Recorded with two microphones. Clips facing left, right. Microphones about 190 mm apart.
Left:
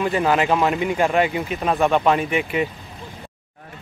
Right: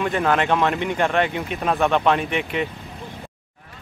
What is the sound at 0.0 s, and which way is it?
Speech, 5° left (ahead or behind).